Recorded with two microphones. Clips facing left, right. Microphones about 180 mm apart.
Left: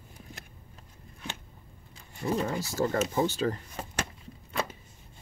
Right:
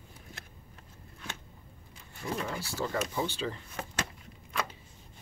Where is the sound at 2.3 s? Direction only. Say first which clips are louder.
Left 5 dB; 45° left (ahead or behind).